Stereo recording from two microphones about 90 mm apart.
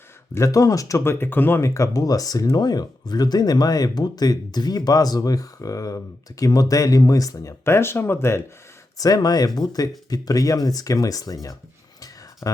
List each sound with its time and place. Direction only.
0.3 s speech: 35° left (ahead or behind)
1.6 s speech: 35° left (ahead or behind)
7.6 s speech: 30° left (ahead or behind)
9.0 s speech: 45° left (ahead or behind)
12.4 s speech: 35° left (ahead or behind)